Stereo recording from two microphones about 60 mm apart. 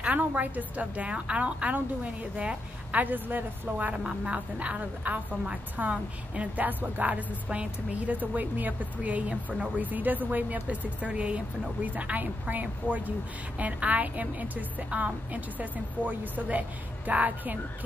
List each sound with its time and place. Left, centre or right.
0.0 s a woman's voice: right